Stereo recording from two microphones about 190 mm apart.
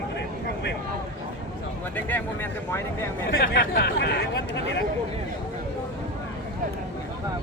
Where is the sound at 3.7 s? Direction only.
55° left (ahead or behind).